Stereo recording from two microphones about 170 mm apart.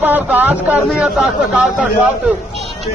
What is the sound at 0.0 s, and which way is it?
A man's voice, 10° right (ahead or behind).